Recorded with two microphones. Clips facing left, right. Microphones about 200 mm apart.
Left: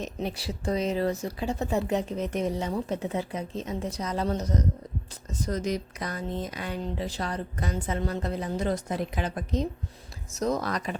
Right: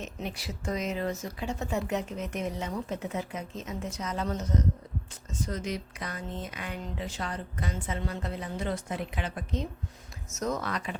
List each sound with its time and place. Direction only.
0.0 s speech: 35° left (ahead or behind)